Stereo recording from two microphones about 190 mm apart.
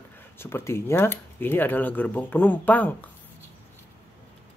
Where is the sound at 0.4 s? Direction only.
10° left (ahead or behind).